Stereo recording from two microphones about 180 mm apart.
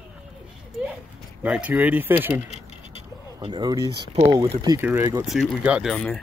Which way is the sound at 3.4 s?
25° right (ahead or behind).